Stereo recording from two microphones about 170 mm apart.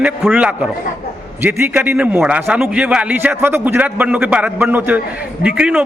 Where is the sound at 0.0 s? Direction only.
10° right (ahead or behind).